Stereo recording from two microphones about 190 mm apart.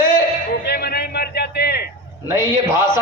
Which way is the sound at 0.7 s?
55° left (ahead or behind).